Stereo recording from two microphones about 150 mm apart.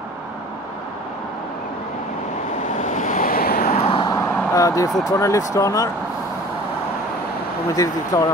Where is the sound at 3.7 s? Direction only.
45° left (ahead or behind).